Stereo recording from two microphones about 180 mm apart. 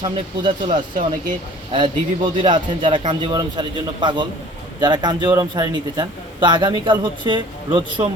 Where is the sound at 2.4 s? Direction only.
25° right (ahead or behind).